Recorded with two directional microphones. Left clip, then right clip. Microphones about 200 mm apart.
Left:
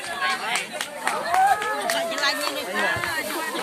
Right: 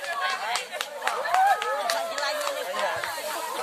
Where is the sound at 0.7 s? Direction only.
50° left (ahead or behind).